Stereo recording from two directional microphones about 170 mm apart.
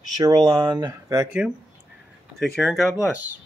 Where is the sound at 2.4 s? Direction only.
Centre (ahead or behind).